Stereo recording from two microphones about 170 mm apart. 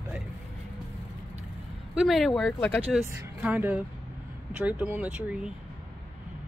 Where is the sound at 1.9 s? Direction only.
Centre (ahead or behind).